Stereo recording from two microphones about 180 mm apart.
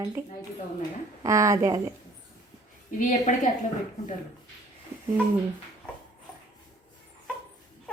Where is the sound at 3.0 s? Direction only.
40° left (ahead or behind).